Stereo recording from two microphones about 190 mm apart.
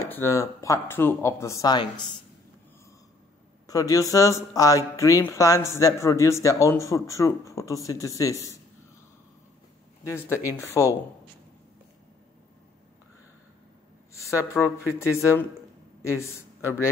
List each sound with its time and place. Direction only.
0.1 s speech: 15° left (ahead or behind)
3.6 s speech: 20° left (ahead or behind)
10.0 s speech: 15° left (ahead or behind)
14.1 s speech: 15° left (ahead or behind)